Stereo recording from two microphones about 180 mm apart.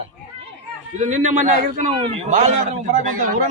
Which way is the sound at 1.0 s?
45° right (ahead or behind).